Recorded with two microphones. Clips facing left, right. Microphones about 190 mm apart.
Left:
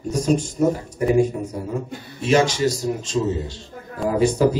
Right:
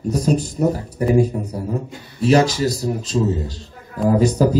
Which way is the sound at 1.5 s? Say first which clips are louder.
Right 2 dB; 35° right (ahead or behind).